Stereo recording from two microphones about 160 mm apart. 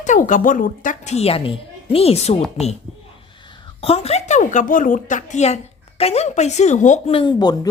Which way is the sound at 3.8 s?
40° left (ahead or behind).